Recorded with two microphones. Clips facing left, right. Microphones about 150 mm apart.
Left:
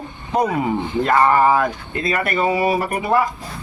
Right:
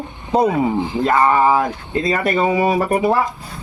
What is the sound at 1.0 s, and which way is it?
Speech, 20° right (ahead or behind).